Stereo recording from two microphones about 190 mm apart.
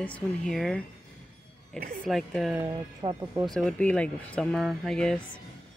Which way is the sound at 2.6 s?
20° right (ahead or behind).